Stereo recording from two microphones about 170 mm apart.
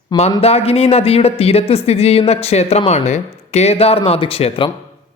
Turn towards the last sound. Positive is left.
turn(degrees=35)  # may be behind; listen again after turning